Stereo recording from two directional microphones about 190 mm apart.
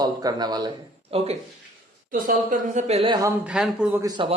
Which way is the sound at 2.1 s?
45° right (ahead or behind).